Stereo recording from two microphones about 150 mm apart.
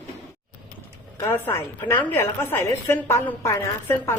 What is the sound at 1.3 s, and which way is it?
A woman's voice, 15° left (ahead or behind).